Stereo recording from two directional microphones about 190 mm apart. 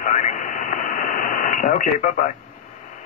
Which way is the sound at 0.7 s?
45° left (ahead or behind).